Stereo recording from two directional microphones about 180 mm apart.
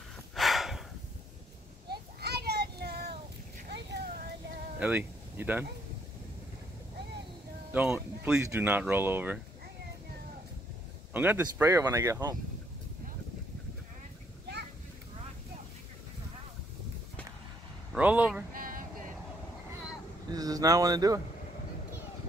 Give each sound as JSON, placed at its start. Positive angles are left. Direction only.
{"t": 0.3, "sound": "a sound", "side_deg": 0}
{"t": 1.9, "sound": "children playing", "side_deg": -65}
{"t": 3.7, "sound": "a sound", "side_deg": -70}
{"t": 4.7, "sound": "speech", "side_deg": -5}
{"t": 7.7, "sound": "speech", "side_deg": -10}
{"t": 11.1, "sound": "speech", "side_deg": -10}
{"t": 17.9, "sound": "speech", "side_deg": -10}
{"t": 18.5, "sound": "music", "side_deg": -50}
{"t": 20.2, "sound": "speech", "side_deg": -20}